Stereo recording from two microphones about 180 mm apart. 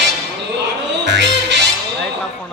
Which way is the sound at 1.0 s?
75° right (ahead or behind).